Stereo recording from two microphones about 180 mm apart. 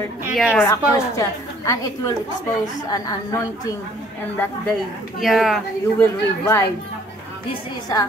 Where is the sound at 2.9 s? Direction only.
20° left (ahead or behind).